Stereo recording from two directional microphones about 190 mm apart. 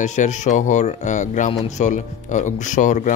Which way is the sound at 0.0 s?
40° left (ahead or behind).